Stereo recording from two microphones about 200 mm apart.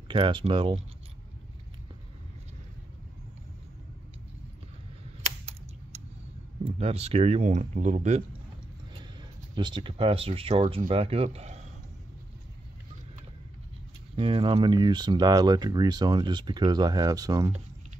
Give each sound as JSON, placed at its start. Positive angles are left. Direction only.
{"t": 0.1, "sound": "speech", "side_deg": -25}
{"t": 5.2, "sound": "a sound", "side_deg": -30}
{"t": 6.6, "sound": "speech", "side_deg": -30}
{"t": 9.6, "sound": "speech", "side_deg": -25}
{"t": 14.1, "sound": "speech", "side_deg": -25}